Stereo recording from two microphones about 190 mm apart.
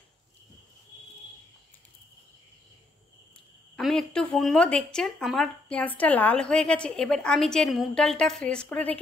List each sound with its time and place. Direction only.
3.7 s speech: 5° left (ahead or behind)